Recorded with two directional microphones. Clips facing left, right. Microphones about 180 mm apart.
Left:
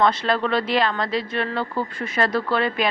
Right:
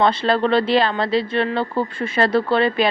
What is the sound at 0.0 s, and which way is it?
A woman's voice, 30° right (ahead or behind).